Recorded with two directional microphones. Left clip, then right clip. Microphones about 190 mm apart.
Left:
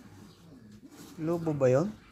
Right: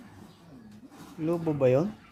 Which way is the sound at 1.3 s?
5° right (ahead or behind).